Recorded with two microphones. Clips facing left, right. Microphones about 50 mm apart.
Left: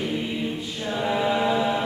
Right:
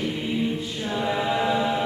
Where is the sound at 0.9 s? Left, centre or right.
Centre.